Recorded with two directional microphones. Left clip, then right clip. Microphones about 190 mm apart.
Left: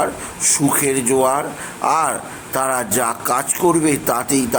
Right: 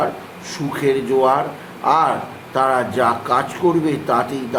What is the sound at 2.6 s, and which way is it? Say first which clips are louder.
A man's voice: right 3 dB; 35° left (ahead or behind).